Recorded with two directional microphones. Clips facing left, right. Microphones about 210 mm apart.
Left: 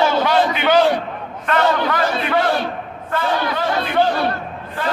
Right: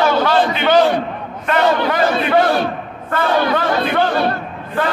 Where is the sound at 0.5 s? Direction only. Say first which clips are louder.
Right 3 dB; 10° left (ahead or behind).